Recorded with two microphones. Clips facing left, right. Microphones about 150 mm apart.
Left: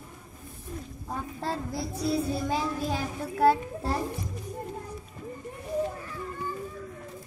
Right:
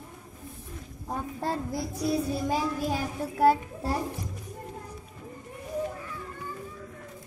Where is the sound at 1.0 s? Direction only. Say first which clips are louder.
Right 2 dB; 15° right (ahead or behind).